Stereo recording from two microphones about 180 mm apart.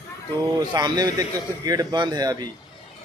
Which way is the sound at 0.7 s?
20° right (ahead or behind).